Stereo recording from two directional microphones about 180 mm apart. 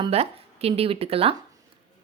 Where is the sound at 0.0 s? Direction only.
35° right (ahead or behind).